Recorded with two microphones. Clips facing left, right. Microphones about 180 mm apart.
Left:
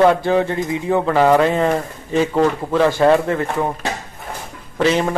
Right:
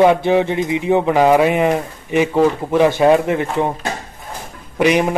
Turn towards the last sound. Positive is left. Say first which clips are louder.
# right 2 dB
turn(degrees=-15)  # may be behind; listen again after turning